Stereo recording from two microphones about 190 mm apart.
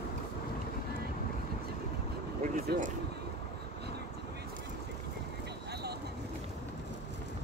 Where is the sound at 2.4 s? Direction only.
50° right (ahead or behind).